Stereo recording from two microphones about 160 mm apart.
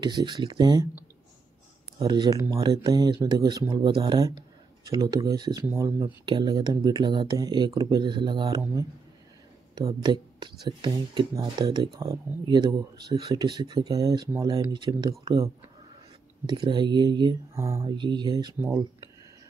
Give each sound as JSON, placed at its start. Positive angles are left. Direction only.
{"t": 0.0, "sound": "speech", "side_deg": -30}
{"t": 2.0, "sound": "speech", "side_deg": -25}
{"t": 6.2, "sound": "speech", "side_deg": -30}